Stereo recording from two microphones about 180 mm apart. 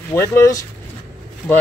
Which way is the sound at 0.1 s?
15° left (ahead or behind).